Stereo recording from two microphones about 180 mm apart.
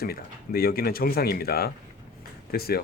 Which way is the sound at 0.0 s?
55° left (ahead or behind).